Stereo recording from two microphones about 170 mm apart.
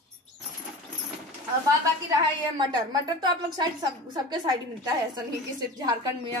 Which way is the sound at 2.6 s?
25° right (ahead or behind).